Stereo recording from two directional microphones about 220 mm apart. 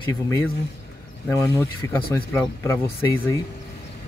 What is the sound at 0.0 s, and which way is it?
Speech, 15° left (ahead or behind).